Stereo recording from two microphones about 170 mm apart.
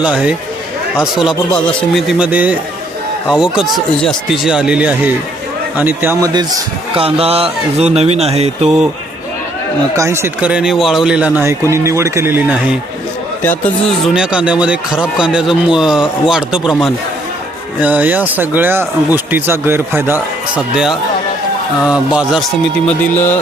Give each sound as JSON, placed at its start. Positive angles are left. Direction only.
{"t": 0.0, "sound": "speech", "side_deg": -5}
{"t": 6.9, "sound": "speech", "side_deg": -35}
{"t": 9.9, "sound": "speech", "side_deg": -15}
{"t": 13.4, "sound": "speech", "side_deg": 10}
{"t": 14.1, "sound": "speech", "side_deg": -5}
{"t": 20.6, "sound": "speech", "side_deg": 0}
{"t": 22.9, "sound": "speech", "side_deg": 10}